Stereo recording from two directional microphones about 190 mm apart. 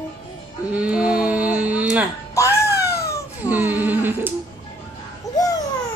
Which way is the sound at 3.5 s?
10° right (ahead or behind).